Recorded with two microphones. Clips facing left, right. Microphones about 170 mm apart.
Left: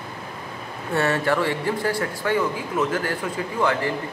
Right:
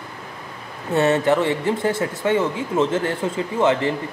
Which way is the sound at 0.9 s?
20° right (ahead or behind).